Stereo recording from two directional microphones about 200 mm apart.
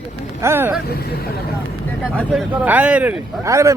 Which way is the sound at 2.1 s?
10° right (ahead or behind).